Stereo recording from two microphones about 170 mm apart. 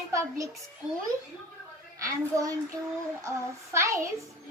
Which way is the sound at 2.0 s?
20° right (ahead or behind).